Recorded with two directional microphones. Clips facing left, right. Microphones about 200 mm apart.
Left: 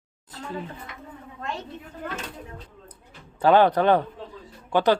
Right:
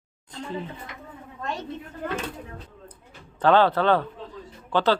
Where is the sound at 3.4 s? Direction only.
15° left (ahead or behind).